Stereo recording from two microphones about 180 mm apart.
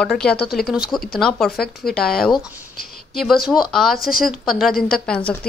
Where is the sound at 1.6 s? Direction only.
60° left (ahead or behind).